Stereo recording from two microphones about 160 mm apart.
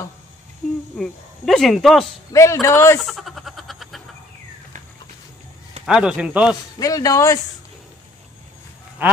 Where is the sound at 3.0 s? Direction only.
Centre (ahead or behind).